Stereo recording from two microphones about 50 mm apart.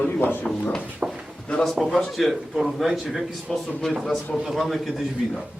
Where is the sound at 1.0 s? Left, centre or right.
Right.